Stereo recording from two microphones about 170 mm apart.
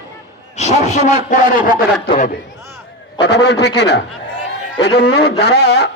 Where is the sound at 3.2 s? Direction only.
80° left.